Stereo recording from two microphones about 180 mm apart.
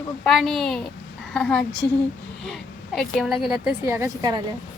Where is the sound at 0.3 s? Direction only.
Centre (ahead or behind).